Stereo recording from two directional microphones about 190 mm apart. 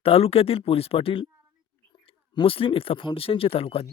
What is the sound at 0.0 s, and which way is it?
Speech, 30° left (ahead or behind).